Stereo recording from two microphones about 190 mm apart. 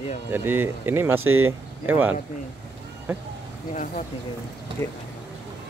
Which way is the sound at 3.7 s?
40° left (ahead or behind).